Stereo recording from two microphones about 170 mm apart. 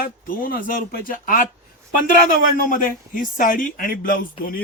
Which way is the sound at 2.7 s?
50° left (ahead or behind).